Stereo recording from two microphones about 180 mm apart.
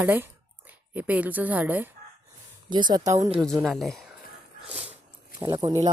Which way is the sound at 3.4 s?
5° left (ahead or behind).